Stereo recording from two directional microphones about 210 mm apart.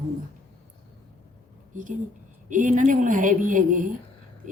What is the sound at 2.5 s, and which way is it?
A woman's voice, 35° right (ahead or behind).